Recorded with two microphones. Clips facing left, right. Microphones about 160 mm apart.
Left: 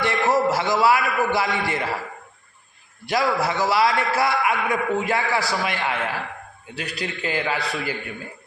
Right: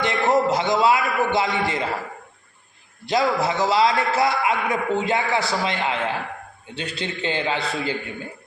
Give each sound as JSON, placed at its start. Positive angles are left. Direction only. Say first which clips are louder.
{"t": 0.0, "sound": "a sound", "louder": "right 1 dB", "side_deg": -20}
{"t": 1.3, "sound": "a man's voice", "louder": "right 1 dB", "side_deg": -20}
{"t": 3.1, "sound": "a man's voice", "louder": "right 1 dB", "side_deg": -20}